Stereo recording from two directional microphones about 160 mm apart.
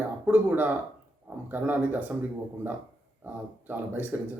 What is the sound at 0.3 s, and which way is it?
Speech, 10° right (ahead or behind).